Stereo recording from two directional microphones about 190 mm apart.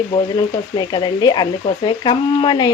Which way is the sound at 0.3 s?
25° left (ahead or behind).